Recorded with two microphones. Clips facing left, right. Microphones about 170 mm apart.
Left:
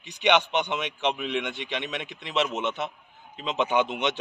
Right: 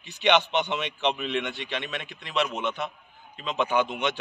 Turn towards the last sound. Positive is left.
turn(degrees=25)  # may be behind; listen again after turning